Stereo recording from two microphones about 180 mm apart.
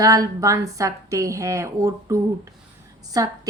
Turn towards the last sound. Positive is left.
turn(degrees=-20)  # may be behind; listen again after turning